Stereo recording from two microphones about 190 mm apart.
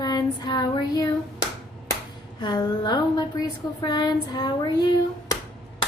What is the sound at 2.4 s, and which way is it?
A woman's voice, 20° left (ahead or behind).